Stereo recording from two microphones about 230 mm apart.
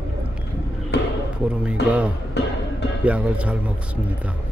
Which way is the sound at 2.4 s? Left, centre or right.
Left.